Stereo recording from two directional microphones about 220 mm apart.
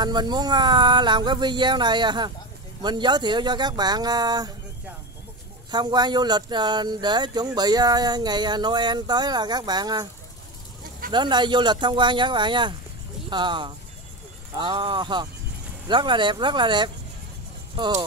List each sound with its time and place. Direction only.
0.0 s speech: 20° right (ahead or behind)
5.7 s speech: 20° right (ahead or behind)
11.1 s speech: 20° right (ahead or behind)